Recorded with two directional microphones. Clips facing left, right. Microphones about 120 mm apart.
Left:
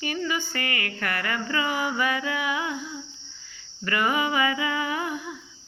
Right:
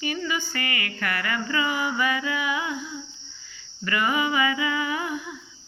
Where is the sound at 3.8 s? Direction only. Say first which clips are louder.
Even; 45° left (ahead or behind).